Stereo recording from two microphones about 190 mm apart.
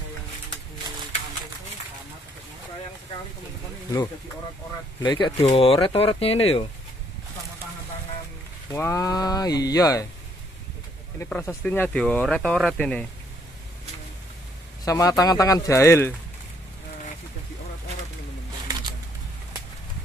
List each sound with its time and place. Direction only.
5.0 s speech: 25° left (ahead or behind)
8.7 s speech: 15° left (ahead or behind)
11.1 s speech: 10° left (ahead or behind)
14.9 s speech: 15° left (ahead or behind)